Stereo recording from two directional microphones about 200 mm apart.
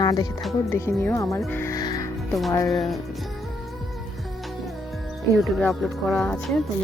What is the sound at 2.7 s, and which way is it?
Speech, centre (ahead or behind).